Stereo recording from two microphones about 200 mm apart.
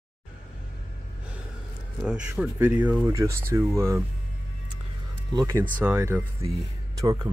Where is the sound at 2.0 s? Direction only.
5° right (ahead or behind).